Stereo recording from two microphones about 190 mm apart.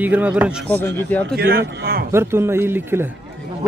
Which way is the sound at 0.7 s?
10° left (ahead or behind).